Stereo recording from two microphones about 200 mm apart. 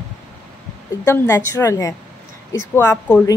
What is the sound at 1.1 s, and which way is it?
A woman's voice, 15° left (ahead or behind).